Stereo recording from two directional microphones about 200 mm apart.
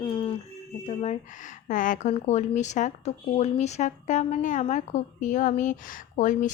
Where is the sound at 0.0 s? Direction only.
25° left (ahead or behind).